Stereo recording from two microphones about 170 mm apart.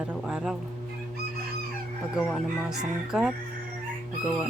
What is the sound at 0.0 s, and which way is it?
Music, 5° right (ahead or behind).